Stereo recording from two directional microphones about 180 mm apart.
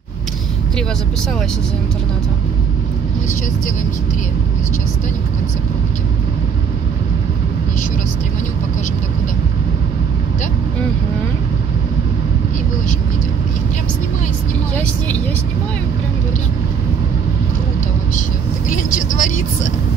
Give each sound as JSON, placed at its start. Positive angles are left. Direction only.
{"t": 18.7, "sound": "speech", "side_deg": 45}